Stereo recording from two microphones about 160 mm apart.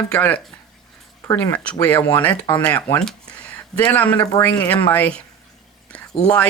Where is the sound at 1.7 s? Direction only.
10° left (ahead or behind).